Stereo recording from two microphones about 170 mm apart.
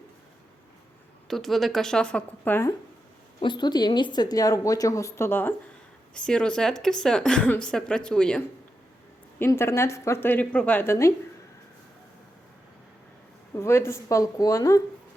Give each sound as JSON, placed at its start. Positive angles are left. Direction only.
{"t": 1.3, "sound": "a woman's voice", "side_deg": 0}
{"t": 3.4, "sound": "a woman's voice", "side_deg": 25}
{"t": 9.4, "sound": "a woman's voice", "side_deg": 15}
{"t": 13.6, "sound": "a woman's voice", "side_deg": 15}